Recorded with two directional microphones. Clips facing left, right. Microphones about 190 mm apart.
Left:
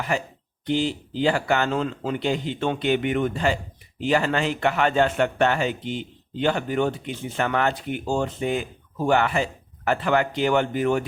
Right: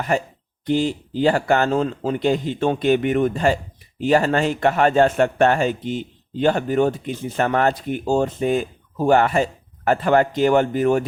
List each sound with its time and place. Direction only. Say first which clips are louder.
0.7 s speech: right 4 dB; 45° right (ahead or behind)